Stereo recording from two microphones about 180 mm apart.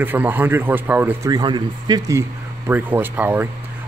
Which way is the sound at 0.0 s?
10° right (ahead or behind).